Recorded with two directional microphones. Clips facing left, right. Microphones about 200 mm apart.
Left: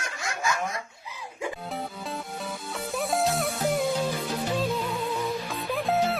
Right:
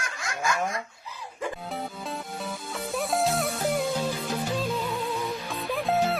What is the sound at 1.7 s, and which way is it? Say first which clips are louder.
Music: even; centre (ahead or behind).